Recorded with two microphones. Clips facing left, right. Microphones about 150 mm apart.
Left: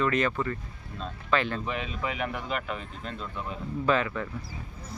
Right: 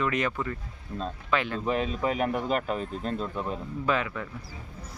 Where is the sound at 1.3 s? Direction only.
10° right (ahead or behind).